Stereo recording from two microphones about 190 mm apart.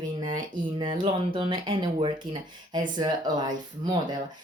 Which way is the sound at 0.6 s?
25° right (ahead or behind).